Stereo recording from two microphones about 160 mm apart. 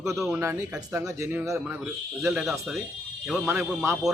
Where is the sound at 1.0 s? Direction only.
20° right (ahead or behind).